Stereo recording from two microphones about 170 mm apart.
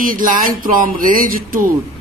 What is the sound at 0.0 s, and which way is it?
Speech, 55° right (ahead or behind).